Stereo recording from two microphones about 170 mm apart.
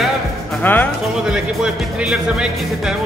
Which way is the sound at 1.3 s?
5° right (ahead or behind).